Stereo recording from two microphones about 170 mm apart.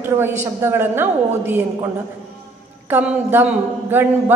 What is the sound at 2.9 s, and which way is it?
A woman's voice, 10° right (ahead or behind).